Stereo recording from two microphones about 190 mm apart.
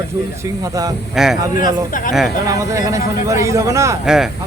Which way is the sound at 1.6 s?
45° left (ahead or behind).